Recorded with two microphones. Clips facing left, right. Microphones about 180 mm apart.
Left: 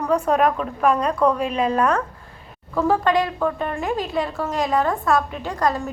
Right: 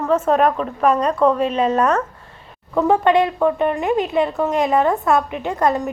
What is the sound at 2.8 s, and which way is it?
A woman's voice, 20° right (ahead or behind).